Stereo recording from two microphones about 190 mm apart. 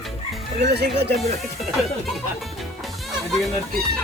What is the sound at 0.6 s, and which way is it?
Speech, 60° right (ahead or behind).